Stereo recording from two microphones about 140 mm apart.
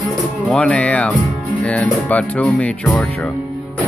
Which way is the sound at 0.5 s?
5° left (ahead or behind).